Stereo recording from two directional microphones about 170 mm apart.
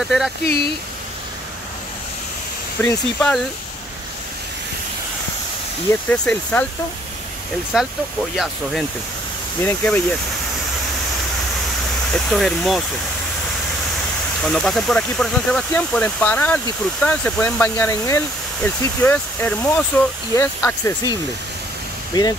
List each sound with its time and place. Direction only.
0.0 s speech: centre (ahead or behind)
2.8 s speech: 10° left (ahead or behind)
5.9 s speech: 10° left (ahead or behind)
9.6 s speech: 10° left (ahead or behind)
12.3 s speech: centre (ahead or behind)
14.4 s speech: 5° left (ahead or behind); by 22.3 s 25° left (ahead or behind)